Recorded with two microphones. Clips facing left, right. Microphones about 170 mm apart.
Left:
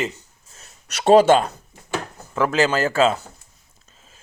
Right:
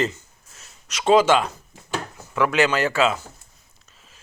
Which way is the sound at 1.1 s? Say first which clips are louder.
Left 3 dB; 40° left (ahead or behind).